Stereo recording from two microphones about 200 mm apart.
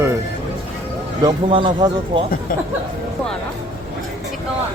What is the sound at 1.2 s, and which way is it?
Speech, 25° right (ahead or behind).